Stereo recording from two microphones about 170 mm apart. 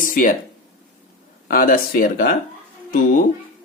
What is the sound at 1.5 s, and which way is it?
Speech, 55° left (ahead or behind).